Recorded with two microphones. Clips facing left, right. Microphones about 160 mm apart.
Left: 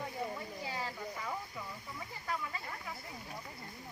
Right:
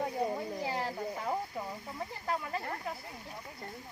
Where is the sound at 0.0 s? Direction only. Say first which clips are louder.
Right 7 dB; 65° right (ahead or behind).